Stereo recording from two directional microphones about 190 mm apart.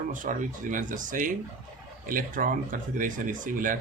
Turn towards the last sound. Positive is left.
turn(degrees=-45)  # may be behind; listen again after turning